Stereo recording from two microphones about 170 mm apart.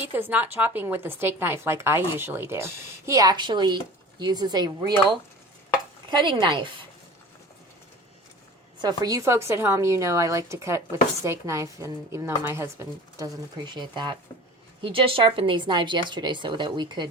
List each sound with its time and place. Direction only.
0.0 s a woman's voice: 10° right (ahead or behind)
6.1 s a woman's voice: 30° right (ahead or behind)
8.8 s a woman's voice: 25° right (ahead or behind)